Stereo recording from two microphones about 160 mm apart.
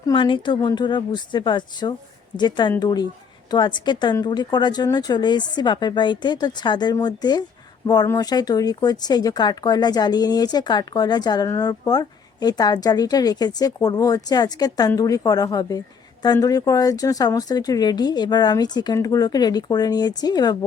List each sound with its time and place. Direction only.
0.1 s speech: 30° left (ahead or behind)